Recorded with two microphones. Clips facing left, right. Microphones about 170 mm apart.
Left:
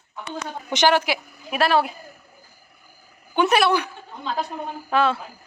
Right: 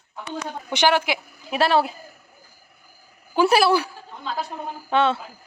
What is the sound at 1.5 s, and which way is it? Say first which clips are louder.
Speech: even; 25° right (ahead or behind).